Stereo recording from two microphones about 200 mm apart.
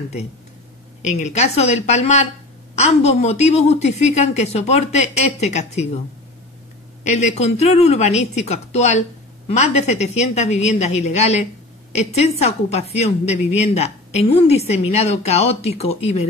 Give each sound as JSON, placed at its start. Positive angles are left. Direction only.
{"t": 1.0, "sound": "a woman's voice", "side_deg": 35}
{"t": 7.1, "sound": "a woman's voice", "side_deg": 35}